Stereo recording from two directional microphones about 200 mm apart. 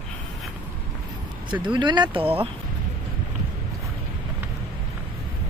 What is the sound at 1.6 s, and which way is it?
Speech, 25° right (ahead or behind).